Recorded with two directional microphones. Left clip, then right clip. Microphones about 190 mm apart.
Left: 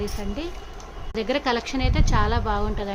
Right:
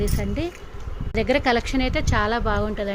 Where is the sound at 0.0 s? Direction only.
30° right (ahead or behind).